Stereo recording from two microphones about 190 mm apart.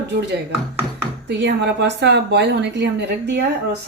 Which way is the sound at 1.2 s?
65° right (ahead or behind).